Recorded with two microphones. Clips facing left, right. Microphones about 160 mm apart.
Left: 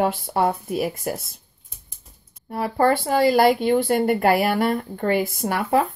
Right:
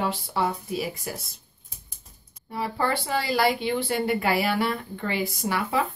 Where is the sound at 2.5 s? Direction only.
50° left (ahead or behind).